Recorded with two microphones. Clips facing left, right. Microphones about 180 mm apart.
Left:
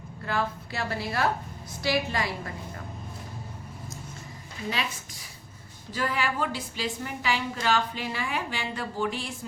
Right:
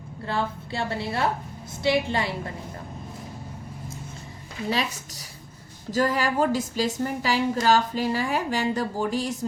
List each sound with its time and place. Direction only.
0.3 s a woman's voice: 30° right (ahead or behind)
4.7 s a woman's voice: 40° right (ahead or behind)